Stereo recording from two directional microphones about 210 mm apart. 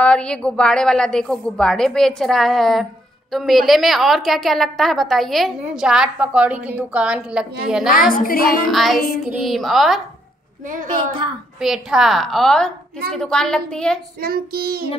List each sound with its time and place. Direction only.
0.0 s a woman's voice: 5° left (ahead or behind)
8.1 s music: 40° left (ahead or behind)
8.6 s a woman's voice: centre (ahead or behind)
11.6 s a woman's voice: centre (ahead or behind)
14.2 s child singing: 45° right (ahead or behind)